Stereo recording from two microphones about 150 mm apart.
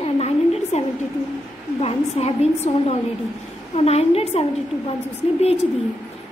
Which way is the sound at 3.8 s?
45° left (ahead or behind).